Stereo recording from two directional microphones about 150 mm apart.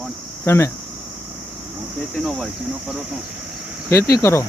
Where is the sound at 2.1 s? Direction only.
Centre (ahead or behind).